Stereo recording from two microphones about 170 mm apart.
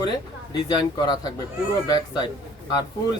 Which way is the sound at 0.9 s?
25° left (ahead or behind).